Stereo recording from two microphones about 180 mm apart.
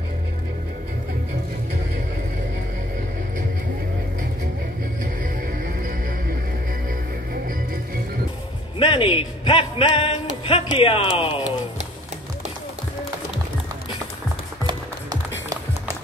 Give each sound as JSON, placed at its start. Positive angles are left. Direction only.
{"t": 5.0, "sound": "music", "side_deg": -50}
{"t": 8.7, "sound": "speech", "side_deg": 30}